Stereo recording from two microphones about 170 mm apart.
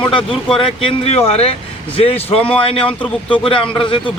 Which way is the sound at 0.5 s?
30° left (ahead or behind).